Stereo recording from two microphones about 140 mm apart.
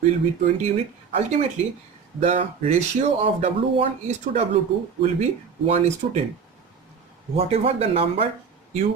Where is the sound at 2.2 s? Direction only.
50° right (ahead or behind).